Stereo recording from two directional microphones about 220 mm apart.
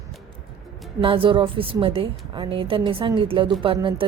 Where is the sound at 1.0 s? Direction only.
25° right (ahead or behind).